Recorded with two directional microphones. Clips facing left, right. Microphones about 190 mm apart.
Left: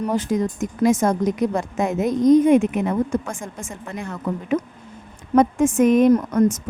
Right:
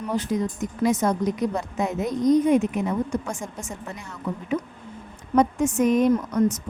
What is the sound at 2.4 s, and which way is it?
A woman's voice, 90° left.